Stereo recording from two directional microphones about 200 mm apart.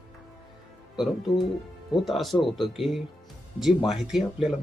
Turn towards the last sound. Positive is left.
turn(degrees=0)  # may be behind; listen again after turning